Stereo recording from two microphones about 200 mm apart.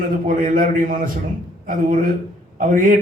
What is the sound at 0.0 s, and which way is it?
A man's voice, 45° right (ahead or behind).